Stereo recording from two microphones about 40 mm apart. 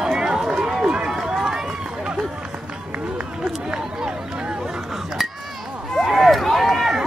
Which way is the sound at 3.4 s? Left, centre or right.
Centre.